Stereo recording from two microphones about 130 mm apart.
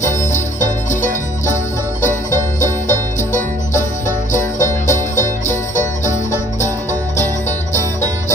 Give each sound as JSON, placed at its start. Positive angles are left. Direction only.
{"t": 0.0, "sound": "music", "side_deg": 70}
{"t": 4.3, "sound": "music", "side_deg": 70}
{"t": 6.6, "sound": "music", "side_deg": 65}